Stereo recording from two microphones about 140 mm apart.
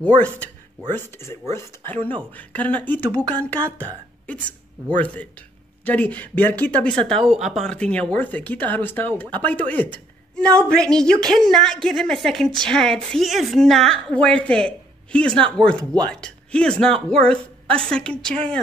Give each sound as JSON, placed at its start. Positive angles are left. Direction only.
{"t": 0.9, "sound": "speech", "side_deg": 20}
{"t": 4.9, "sound": "a woman's voice", "side_deg": 10}